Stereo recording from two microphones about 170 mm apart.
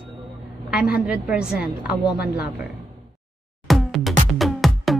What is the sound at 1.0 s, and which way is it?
Speech, 5° right (ahead or behind).